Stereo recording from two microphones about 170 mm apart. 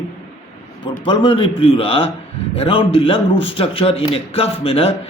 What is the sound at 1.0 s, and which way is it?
A man's voice, 30° left (ahead or behind).